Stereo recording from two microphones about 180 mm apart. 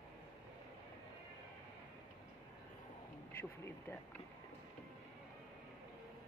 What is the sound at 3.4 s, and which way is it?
Speech, 10° left (ahead or behind).